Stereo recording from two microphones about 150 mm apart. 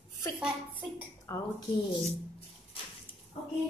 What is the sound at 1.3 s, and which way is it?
Speech, 20° left (ahead or behind).